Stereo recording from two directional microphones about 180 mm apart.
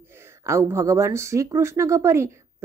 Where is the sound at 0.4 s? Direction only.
15° right (ahead or behind).